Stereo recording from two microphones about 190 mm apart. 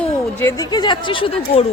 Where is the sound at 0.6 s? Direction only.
20° left (ahead or behind).